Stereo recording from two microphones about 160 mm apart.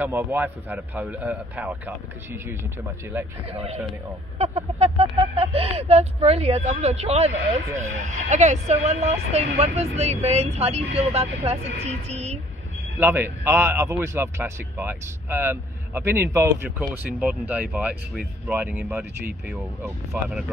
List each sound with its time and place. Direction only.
0.0 s a man's voice: 10° right (ahead or behind)
3.5 s speech: 40° right (ahead or behind)
13.0 s a man's voice: 15° right (ahead or behind)
20.1 s speech: centre (ahead or behind)